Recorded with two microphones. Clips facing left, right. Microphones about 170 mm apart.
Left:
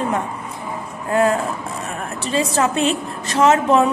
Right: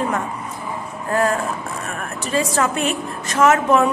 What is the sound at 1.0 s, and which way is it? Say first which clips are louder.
A woman's voice: left 2 dB; 25° left (ahead or behind).